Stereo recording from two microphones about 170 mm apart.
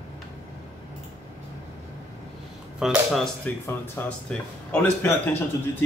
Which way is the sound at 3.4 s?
15° left (ahead or behind).